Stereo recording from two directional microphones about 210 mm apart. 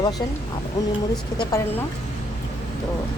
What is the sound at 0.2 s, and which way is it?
Speech, 15° left (ahead or behind).